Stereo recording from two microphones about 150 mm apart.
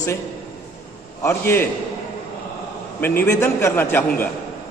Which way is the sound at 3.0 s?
15° left (ahead or behind).